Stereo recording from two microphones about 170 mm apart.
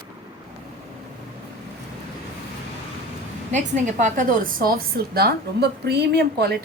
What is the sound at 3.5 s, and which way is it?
A woman's voice, 45° right (ahead or behind).